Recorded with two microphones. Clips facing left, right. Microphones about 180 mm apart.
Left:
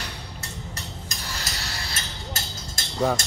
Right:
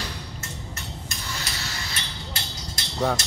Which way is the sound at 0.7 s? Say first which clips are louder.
Even; 40° left (ahead or behind).